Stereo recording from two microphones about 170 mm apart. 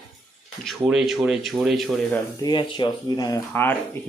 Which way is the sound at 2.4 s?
25° left (ahead or behind).